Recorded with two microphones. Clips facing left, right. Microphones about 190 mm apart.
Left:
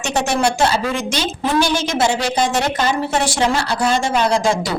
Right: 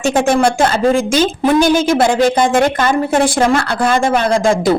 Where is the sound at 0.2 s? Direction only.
50° right (ahead or behind).